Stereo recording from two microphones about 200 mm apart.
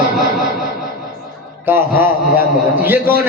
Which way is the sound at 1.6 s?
10° right (ahead or behind).